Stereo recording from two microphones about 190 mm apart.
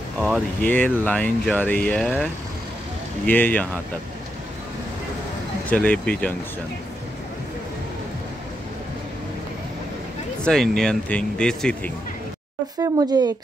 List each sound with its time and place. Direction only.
0.6 s speech: 10° left (ahead or behind)
3.3 s speech: 10° left (ahead or behind)
5.7 s speech: 5° left (ahead or behind)
10.4 s speech: 5° left (ahead or behind)
12.8 s speech: 20° right (ahead or behind)